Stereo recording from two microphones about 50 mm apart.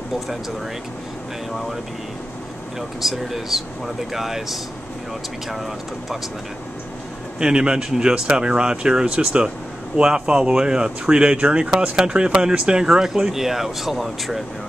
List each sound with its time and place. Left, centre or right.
3.0 s speech: centre
7.3 s speech: centre